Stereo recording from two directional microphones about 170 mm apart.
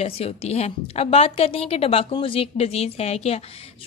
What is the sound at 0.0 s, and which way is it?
A woman's voice, 35° left (ahead or behind).